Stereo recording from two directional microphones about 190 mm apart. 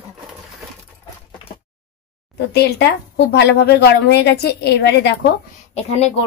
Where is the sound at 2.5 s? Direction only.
60° left (ahead or behind).